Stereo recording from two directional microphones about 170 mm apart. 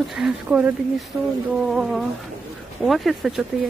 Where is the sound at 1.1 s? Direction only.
15° right (ahead or behind).